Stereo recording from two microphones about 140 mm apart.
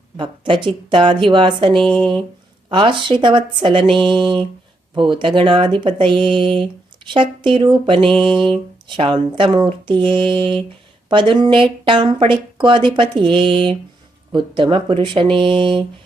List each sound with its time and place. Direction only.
0.2 s speech: 35° right (ahead or behind)
1.8 s a sound: 5° left (ahead or behind)
2.6 s speech: 35° right (ahead or behind)